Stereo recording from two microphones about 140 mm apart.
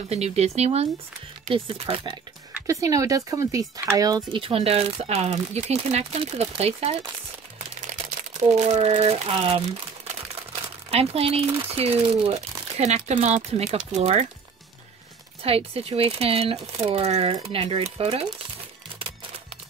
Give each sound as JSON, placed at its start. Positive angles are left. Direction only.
{"t": 0.1, "sound": "speech", "side_deg": -50}
{"t": 2.6, "sound": "speech", "side_deg": -25}
{"t": 4.4, "sound": "speech", "side_deg": -40}
{"t": 8.5, "sound": "speech", "side_deg": -55}
{"t": 10.9, "sound": "speech", "side_deg": -45}
{"t": 15.4, "sound": "speech", "side_deg": -45}